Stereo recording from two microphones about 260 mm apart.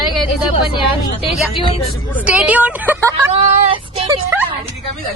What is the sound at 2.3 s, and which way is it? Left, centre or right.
Speech, centre.